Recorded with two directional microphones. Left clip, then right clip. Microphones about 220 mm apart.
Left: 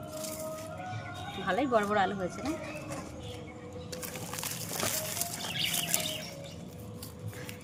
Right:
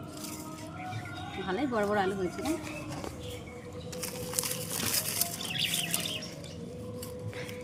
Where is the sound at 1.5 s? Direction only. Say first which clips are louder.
Left 2 dB; 45° left (ahead or behind).